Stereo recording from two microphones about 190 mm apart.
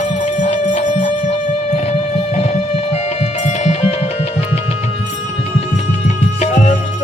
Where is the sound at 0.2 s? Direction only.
40° left (ahead or behind).